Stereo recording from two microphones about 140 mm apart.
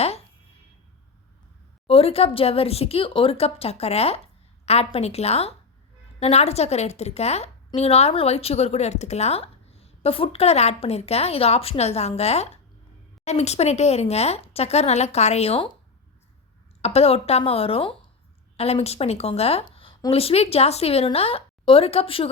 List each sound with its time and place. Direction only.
1.9 s speech: 40° left (ahead or behind)
16.8 s a woman's voice: 45° left (ahead or behind)